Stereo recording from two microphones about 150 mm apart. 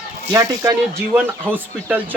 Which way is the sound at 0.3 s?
25° right (ahead or behind).